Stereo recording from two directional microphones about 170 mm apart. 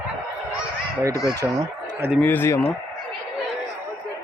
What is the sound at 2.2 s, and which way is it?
Speech, 10° left (ahead or behind).